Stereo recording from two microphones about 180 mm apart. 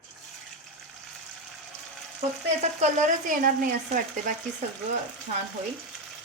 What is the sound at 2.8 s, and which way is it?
Speech, 45° right (ahead or behind).